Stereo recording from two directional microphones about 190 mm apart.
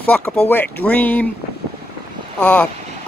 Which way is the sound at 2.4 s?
5° left (ahead or behind).